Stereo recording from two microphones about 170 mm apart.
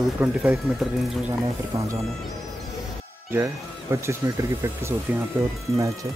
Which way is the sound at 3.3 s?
15° right (ahead or behind).